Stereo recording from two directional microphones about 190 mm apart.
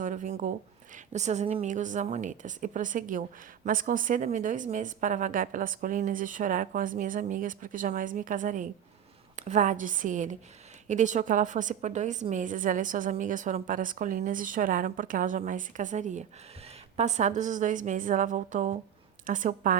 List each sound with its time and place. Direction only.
0.0 s a woman's voice: 40° right (ahead or behind)